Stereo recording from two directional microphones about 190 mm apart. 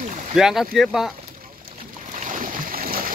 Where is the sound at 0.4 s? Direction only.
Centre (ahead or behind).